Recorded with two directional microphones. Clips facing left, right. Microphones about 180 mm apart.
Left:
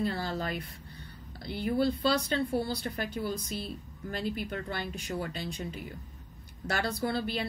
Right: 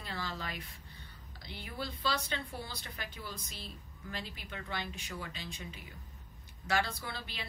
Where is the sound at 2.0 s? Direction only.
35° left (ahead or behind).